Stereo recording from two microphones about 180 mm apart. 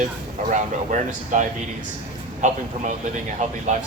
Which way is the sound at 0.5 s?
45° right (ahead or behind).